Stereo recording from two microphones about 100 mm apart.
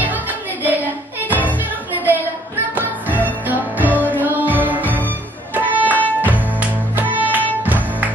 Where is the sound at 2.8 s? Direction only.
15° right (ahead or behind).